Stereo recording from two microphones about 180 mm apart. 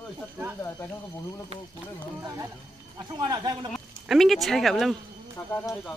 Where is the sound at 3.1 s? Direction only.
20° right (ahead or behind).